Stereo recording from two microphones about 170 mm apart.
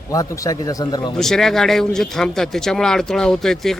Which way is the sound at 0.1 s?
20° left (ahead or behind).